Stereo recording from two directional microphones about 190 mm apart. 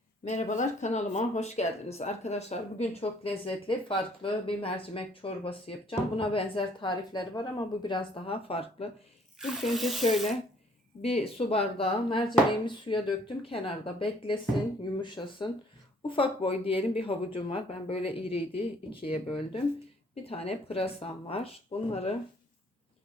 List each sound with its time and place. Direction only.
0.3 s speech: 40° left (ahead or behind)
9.4 s speech: centre (ahead or behind)
11.0 s speech: 30° left (ahead or behind)